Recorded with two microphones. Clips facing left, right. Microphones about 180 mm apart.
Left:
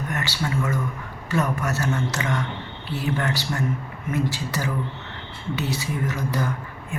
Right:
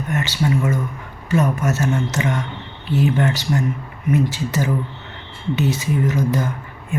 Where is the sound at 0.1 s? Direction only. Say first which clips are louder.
Right 9 dB; 20° right (ahead or behind).